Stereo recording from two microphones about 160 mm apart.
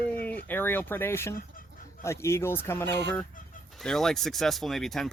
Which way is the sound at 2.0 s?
15° left (ahead or behind).